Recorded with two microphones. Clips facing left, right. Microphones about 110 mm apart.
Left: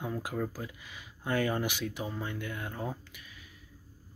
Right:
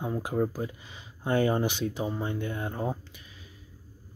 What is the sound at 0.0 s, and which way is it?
Speech, 25° right (ahead or behind).